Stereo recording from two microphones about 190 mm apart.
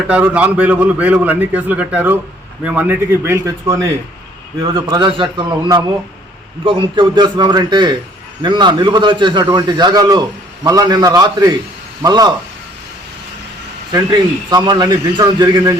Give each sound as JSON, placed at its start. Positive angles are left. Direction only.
{"t": 0.1, "sound": "a man's voice", "side_deg": -10}
{"t": 13.9, "sound": "a man's voice", "side_deg": -20}